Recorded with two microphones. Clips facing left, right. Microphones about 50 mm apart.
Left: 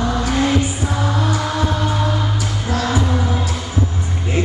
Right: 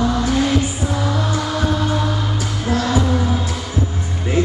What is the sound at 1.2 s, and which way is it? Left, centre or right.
Music, left.